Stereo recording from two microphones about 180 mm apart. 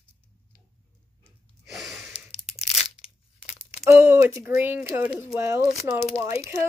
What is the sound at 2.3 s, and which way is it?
Crunch, 35° left (ahead or behind).